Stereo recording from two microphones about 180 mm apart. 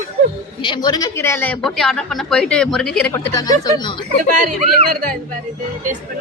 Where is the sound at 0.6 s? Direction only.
25° left (ahead or behind); by 3.1 s 5° left (ahead or behind).